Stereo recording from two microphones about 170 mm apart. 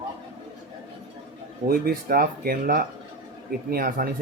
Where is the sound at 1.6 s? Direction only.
60° right (ahead or behind).